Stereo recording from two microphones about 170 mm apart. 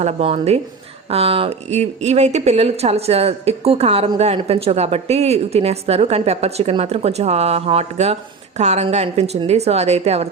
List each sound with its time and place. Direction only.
0.0 s a woman's voice: 35° right (ahead or behind)